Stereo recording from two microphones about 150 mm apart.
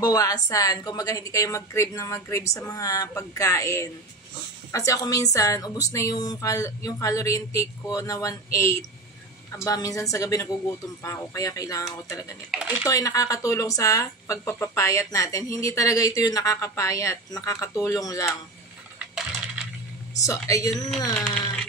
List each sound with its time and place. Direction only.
0.0 s speech: 25° left (ahead or behind)
12.4 s speech: 5° right (ahead or behind)
12.8 s speech: 20° left (ahead or behind)
20.2 s speech: 20° left (ahead or behind)